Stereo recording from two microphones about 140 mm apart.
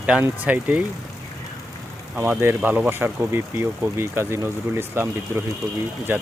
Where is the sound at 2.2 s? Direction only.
15° right (ahead or behind).